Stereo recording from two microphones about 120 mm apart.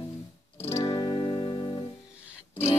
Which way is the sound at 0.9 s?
40° left (ahead or behind).